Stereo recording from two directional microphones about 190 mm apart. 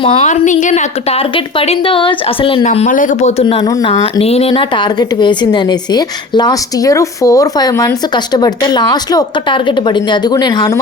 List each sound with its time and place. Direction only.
0.0 s a woman's voice: 30° left (ahead or behind)